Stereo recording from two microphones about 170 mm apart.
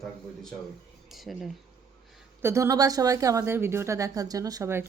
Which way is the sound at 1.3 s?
Centre (ahead or behind).